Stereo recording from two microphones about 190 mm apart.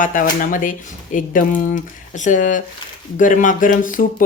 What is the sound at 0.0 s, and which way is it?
Speech, 45° left (ahead or behind).